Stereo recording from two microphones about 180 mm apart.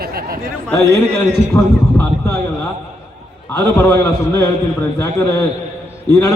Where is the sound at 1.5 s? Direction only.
15° left (ahead or behind).